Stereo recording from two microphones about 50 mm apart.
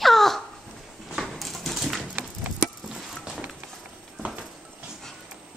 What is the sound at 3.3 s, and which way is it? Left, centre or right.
Run, centre.